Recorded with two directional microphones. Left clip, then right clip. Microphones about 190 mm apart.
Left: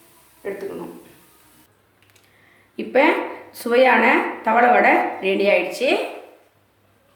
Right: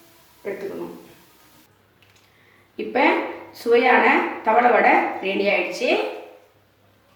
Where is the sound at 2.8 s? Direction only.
55° left (ahead or behind).